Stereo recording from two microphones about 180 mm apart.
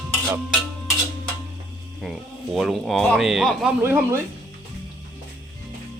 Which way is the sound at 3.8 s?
10° right (ahead or behind).